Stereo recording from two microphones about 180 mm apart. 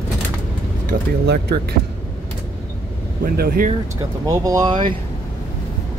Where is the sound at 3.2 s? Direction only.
55° right (ahead or behind).